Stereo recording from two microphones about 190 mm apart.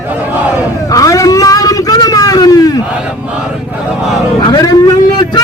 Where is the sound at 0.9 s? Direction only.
15° left (ahead or behind).